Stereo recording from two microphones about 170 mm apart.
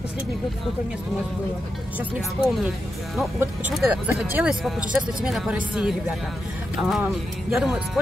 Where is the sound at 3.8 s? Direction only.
10° right (ahead or behind).